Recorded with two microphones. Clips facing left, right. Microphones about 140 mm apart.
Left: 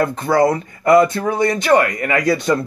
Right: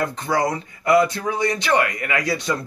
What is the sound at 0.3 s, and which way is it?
A man's voice, 50° left (ahead or behind).